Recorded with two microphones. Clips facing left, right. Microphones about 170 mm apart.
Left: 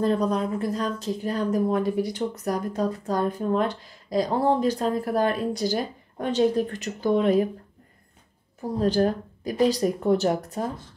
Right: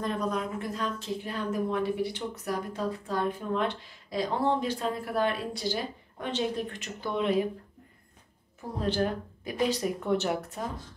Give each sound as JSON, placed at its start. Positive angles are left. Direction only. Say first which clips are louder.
{"t": 0.0, "sound": "speech", "louder": "left 7 dB", "side_deg": 35}
{"t": 8.8, "sound": "speech", "louder": "left 6 dB", "side_deg": 40}